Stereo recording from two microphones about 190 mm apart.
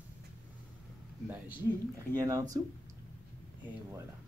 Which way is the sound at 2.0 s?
15° right (ahead or behind).